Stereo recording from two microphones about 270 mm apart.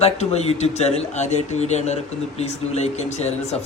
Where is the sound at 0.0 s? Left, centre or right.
Left.